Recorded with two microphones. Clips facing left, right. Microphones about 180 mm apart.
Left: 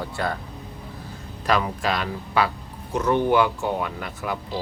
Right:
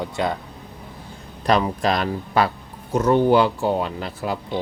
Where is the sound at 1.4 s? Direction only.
35° right (ahead or behind).